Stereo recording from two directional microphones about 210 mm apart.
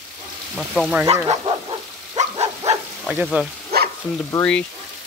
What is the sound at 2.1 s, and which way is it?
Dog, 30° right (ahead or behind).